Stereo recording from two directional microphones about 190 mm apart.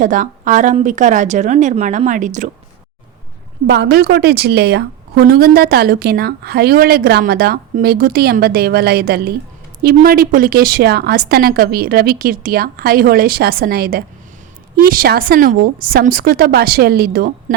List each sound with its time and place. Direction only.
0.0 s speech: 45° right (ahead or behind)
3.7 s a woman's voice: 60° right (ahead or behind)